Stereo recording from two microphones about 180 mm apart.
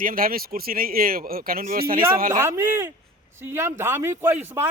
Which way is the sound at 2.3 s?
15° right (ahead or behind).